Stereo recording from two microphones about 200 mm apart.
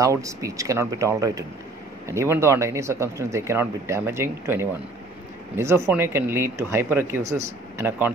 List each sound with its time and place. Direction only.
0.0 s speech: 15° right (ahead or behind)